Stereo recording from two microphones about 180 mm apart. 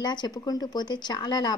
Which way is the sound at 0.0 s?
25° left (ahead or behind).